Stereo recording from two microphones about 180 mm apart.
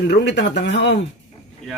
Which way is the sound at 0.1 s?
75° left (ahead or behind).